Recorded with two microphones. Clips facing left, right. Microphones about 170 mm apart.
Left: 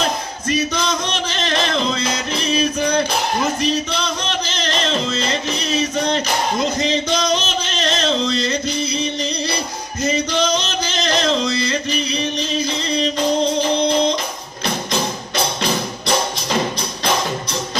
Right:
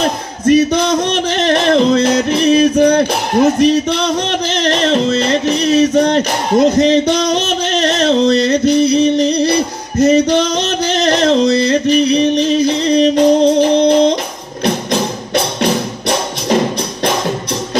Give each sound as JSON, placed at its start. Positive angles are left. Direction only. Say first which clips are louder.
{"t": 0.0, "sound": "battle cry", "louder": "right 7 dB", "side_deg": -60}
{"t": 1.0, "sound": "music", "louder": "right 9 dB", "side_deg": -60}